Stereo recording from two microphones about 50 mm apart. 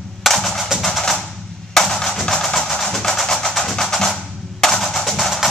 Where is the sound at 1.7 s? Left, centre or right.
Centre.